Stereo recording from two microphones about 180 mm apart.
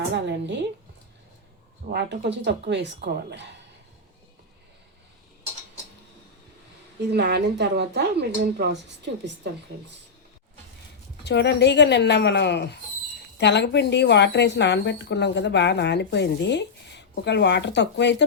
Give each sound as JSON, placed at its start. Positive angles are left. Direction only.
{"t": 0.1, "sound": "a woman's voice", "side_deg": -75}
{"t": 1.9, "sound": "a woman's voice", "side_deg": -70}
{"t": 7.1, "sound": "a woman's voice", "side_deg": -65}
{"t": 11.2, "sound": "a woman's voice", "side_deg": 75}